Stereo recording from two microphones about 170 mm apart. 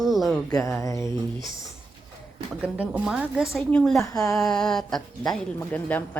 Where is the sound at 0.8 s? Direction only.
15° left (ahead or behind).